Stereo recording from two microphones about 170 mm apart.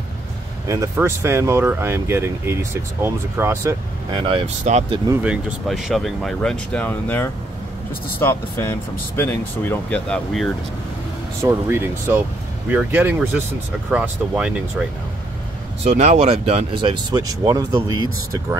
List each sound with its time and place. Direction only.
0.7 s speech: 15° right (ahead or behind)
4.1 s speech: 30° right (ahead or behind)
4.6 s speech: 40° right (ahead or behind)
5.2 s speech: 5° right (ahead or behind)
11.4 s speech: 15° right (ahead or behind)
15.8 s speech: 40° right (ahead or behind); by 18.6 s 20° right (ahead or behind)